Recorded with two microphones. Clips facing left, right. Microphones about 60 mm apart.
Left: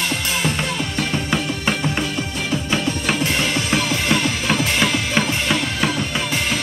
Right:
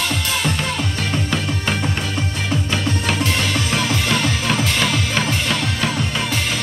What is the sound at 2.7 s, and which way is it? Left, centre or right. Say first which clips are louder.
Music: even; centre.